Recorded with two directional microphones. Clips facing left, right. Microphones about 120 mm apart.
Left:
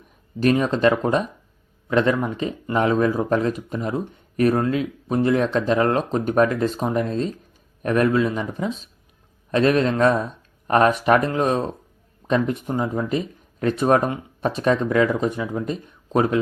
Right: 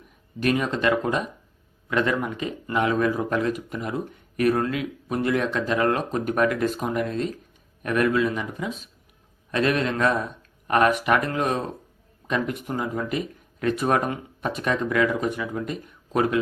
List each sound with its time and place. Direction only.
0.3 s speech: 30° left (ahead or behind)